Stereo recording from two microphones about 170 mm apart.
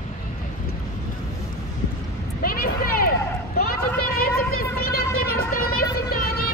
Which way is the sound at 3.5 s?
60° left (ahead or behind).